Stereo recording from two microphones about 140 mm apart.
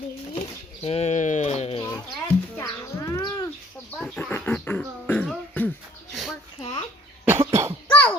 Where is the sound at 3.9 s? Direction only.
10° left (ahead or behind).